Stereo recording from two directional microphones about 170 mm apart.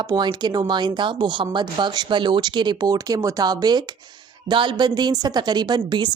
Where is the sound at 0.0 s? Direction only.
25° right (ahead or behind).